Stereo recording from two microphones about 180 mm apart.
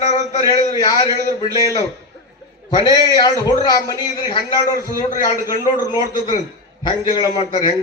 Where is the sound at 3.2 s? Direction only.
20° left (ahead or behind).